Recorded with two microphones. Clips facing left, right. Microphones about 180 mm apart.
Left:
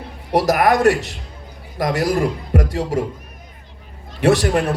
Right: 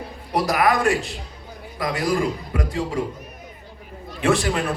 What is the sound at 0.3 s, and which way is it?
Speech, 45° left (ahead or behind).